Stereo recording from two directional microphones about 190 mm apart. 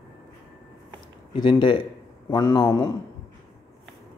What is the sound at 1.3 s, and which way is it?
Speech, 25° left (ahead or behind).